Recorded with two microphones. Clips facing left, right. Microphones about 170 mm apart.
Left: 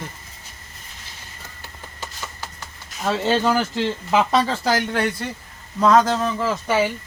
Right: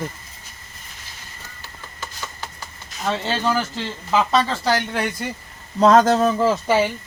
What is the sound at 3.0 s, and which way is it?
Speech, 10° left (ahead or behind).